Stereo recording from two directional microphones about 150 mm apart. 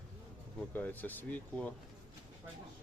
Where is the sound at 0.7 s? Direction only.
10° left (ahead or behind).